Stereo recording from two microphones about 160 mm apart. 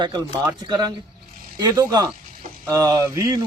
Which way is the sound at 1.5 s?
25° right (ahead or behind).